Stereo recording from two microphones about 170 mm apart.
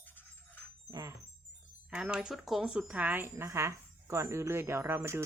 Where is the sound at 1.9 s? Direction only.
5° right (ahead or behind).